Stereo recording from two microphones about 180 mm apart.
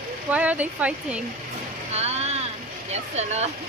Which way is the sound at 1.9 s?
35° right (ahead or behind).